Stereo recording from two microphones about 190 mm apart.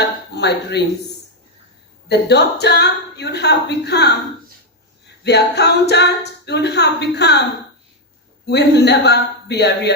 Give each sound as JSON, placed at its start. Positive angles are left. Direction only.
{"t": 0.3, "sound": "speech", "side_deg": 60}
{"t": 2.0, "sound": "speech", "side_deg": 60}
{"t": 5.2, "sound": "speech", "side_deg": 60}
{"t": 8.4, "sound": "speech", "side_deg": 60}